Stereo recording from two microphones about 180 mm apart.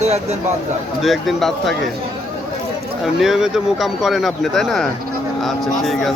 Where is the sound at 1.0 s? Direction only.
Centre (ahead or behind).